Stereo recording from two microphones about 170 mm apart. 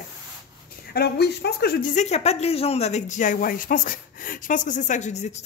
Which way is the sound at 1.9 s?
40° left (ahead or behind).